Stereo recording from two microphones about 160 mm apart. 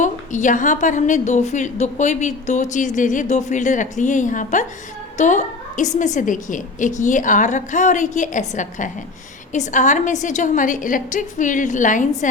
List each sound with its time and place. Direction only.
0.0 s a woman's voice: 50° left (ahead or behind)